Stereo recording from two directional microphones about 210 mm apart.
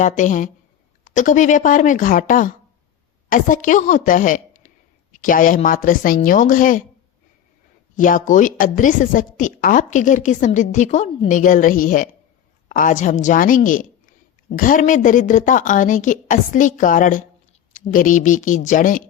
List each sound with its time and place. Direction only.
0.0 s a woman's voice: 35° left (ahead or behind)
7.9 s a woman's voice: 40° left (ahead or behind)